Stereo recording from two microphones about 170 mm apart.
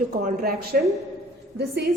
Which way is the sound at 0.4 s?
60° right (ahead or behind).